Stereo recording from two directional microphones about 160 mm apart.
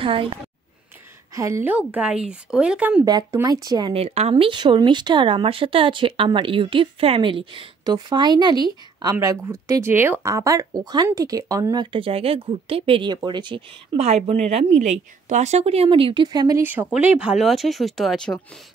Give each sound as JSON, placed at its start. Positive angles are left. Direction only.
{"t": 0.0, "sound": "speech", "side_deg": -35}
{"t": 1.3, "sound": "speech", "side_deg": -20}
{"t": 3.1, "sound": "speech", "side_deg": -25}
{"t": 3.9, "sound": "speech", "side_deg": -40}
{"t": 13.9, "sound": "speech", "side_deg": -40}
{"t": 16.6, "sound": "speech", "side_deg": -10}